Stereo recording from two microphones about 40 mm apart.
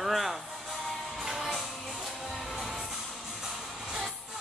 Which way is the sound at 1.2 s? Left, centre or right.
Centre.